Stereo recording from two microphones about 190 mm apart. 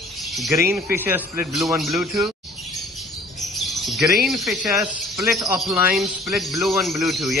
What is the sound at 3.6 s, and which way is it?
Chirp, centre (ahead or behind).